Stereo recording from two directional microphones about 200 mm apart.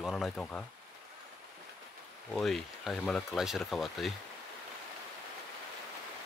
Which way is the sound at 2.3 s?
Centre (ahead or behind).